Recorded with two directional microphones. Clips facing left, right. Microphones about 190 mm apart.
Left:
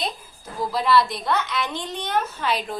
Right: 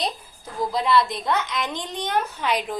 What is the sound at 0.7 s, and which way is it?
A woman's voice, 20° right (ahead or behind).